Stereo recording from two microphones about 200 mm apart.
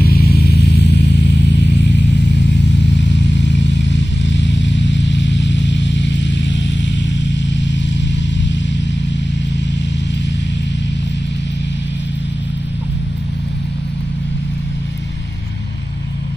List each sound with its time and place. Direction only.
0.0 s music: 50° left (ahead or behind)
3.0 s vehicle: 60° left (ahead or behind)